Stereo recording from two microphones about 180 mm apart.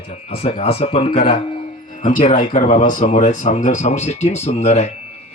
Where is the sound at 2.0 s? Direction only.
45° left (ahead or behind).